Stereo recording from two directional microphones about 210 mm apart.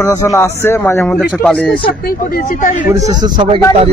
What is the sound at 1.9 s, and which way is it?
Speech, 45° left (ahead or behind).